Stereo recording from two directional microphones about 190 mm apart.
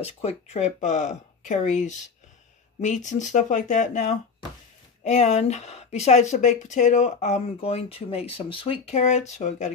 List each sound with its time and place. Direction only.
0.0 s speech: 35° left (ahead or behind)